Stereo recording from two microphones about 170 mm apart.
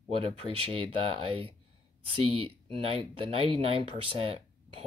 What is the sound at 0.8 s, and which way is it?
Speech, 35° right (ahead or behind).